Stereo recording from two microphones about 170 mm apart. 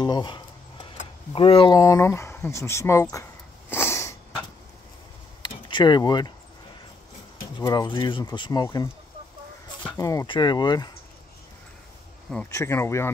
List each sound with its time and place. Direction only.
0.0 s speech: 25° left (ahead or behind)
3.7 s a sound: 15° left (ahead or behind)
5.5 s speech: 30° left (ahead or behind)
7.6 s speech: 25° left (ahead or behind)
9.9 s speech: 20° left (ahead or behind)
12.4 s speech: 15° left (ahead or behind)